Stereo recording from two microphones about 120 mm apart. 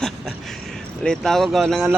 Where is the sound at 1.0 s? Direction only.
5° left (ahead or behind).